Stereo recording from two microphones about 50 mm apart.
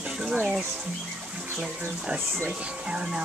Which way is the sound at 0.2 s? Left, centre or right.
Centre.